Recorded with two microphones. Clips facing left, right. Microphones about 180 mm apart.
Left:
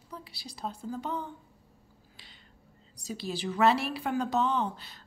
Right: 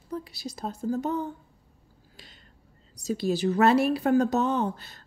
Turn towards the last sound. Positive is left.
turn(degrees=-45)  # may be behind; listen again after turning